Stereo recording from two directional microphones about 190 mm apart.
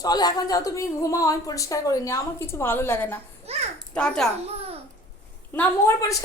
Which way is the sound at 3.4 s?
35° right (ahead or behind).